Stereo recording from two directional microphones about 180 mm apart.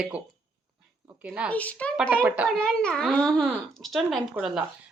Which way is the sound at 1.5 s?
10° left (ahead or behind).